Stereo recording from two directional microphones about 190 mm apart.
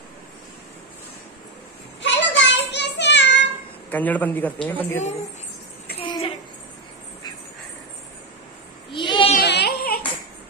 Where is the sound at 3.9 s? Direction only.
10° left (ahead or behind).